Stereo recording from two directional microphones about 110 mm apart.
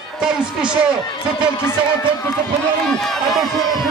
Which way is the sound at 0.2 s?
10° right (ahead or behind).